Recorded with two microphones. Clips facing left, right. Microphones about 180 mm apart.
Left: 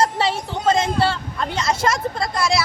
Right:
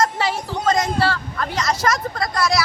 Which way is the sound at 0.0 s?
30° left (ahead or behind).